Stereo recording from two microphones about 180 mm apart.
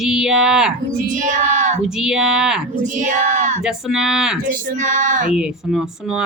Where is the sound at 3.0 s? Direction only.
45° right (ahead or behind).